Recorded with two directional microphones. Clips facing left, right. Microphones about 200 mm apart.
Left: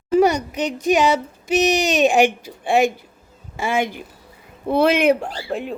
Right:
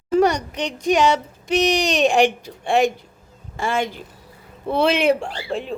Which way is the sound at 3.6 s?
15° left (ahead or behind).